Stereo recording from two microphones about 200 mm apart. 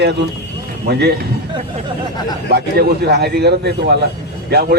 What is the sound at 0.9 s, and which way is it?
Speech, 55° right (ahead or behind).